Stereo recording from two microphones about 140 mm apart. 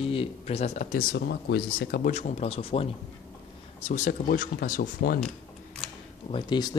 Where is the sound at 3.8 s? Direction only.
60° left (ahead or behind); by 5.2 s 90° left.